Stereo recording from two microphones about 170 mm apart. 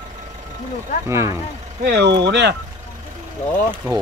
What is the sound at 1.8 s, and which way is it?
Speech, 85° right.